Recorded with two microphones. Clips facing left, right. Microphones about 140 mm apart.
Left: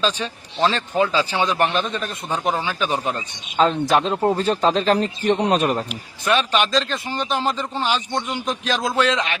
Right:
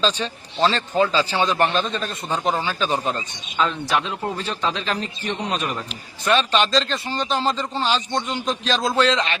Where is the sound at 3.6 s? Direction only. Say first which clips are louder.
Left 5 dB; 40° left (ahead or behind).